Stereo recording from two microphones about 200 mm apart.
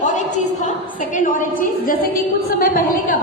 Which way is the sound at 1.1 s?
40° left (ahead or behind).